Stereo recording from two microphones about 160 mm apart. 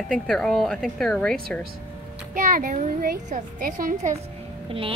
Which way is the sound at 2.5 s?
55° right (ahead or behind).